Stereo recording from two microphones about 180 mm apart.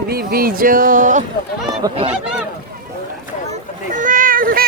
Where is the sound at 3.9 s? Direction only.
45° right (ahead or behind).